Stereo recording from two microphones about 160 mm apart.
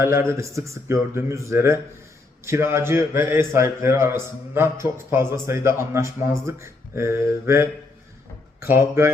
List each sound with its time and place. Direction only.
0.0 s a man's voice: 15° right (ahead or behind)